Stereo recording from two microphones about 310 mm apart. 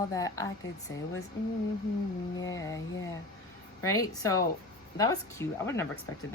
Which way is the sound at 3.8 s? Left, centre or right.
Centre.